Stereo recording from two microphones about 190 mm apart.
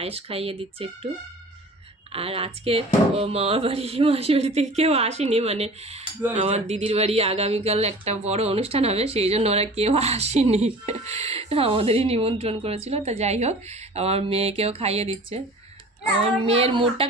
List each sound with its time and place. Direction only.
0.0 s speech: 30° right (ahead or behind)
2.1 s speech: 30° right (ahead or behind)
16.5 s speech: 30° right (ahead or behind)